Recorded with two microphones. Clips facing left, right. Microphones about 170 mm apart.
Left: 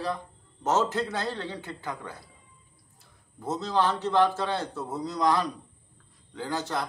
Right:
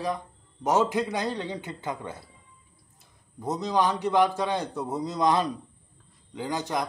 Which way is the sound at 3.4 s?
15° right (ahead or behind).